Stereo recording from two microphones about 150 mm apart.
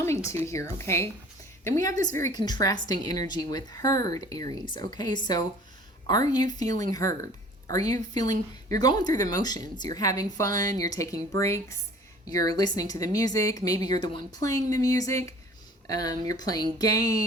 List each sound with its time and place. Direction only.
0.0 s a woman's voice: 20° left (ahead or behind)